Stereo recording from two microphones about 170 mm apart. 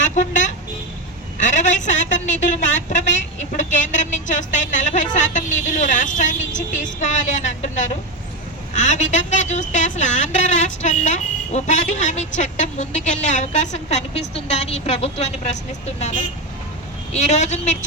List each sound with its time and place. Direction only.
0.0 s vehicle: 45° left (ahead or behind)
1.4 s a sound: 45° left (ahead or behind)
8.7 s a woman's voice: 45° left (ahead or behind)
17.1 s a woman's voice: 40° left (ahead or behind)